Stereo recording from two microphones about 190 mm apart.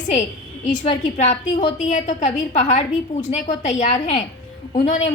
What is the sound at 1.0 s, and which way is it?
A woman's voice, 40° left (ahead or behind).